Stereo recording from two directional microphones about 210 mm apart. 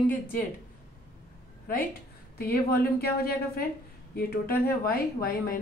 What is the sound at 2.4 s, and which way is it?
A woman's voice, 45° left (ahead or behind).